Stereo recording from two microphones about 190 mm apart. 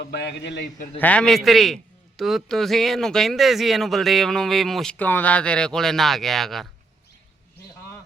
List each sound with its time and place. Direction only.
0.0 s a man's voice: 60° left (ahead or behind)
0.9 s a man's voice: 10° left (ahead or behind)